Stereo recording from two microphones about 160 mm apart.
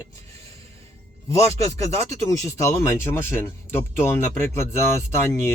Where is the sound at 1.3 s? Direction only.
20° left (ahead or behind).